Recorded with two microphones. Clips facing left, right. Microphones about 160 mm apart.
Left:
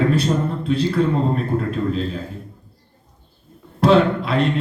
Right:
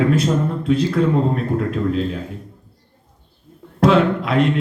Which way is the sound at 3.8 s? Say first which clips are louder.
Even; 30° left (ahead or behind).